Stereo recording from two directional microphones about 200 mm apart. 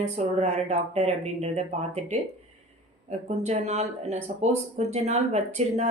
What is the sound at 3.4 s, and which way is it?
Speech, 35° right (ahead or behind).